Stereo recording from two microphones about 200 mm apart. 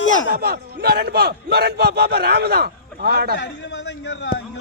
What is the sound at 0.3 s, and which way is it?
Speech, 50° right (ahead or behind).